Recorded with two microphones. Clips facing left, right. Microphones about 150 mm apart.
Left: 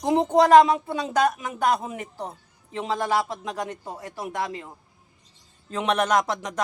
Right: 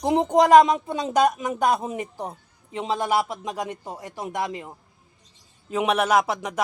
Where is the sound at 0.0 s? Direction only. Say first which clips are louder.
Even; 15° right (ahead or behind).